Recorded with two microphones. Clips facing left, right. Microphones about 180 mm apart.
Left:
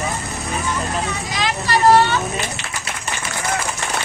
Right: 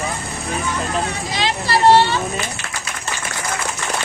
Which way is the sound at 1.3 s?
30° right (ahead or behind).